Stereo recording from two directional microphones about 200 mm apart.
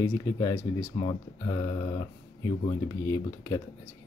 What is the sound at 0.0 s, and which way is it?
Speech, 15° left (ahead or behind).